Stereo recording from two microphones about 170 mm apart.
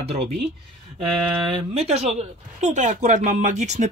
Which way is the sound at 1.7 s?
35° right (ahead or behind).